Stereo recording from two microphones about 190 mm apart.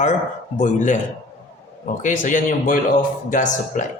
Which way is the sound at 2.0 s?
40° left (ahead or behind).